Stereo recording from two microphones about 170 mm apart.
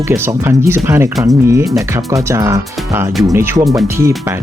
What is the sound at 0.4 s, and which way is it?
Speech, 15° right (ahead or behind).